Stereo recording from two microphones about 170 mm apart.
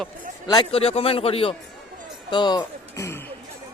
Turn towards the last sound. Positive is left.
turn(degrees=20)  # may be behind; listen again after turning